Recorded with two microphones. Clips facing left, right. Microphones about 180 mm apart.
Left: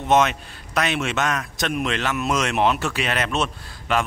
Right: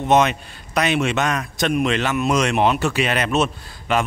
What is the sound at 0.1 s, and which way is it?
Speech, centre (ahead or behind).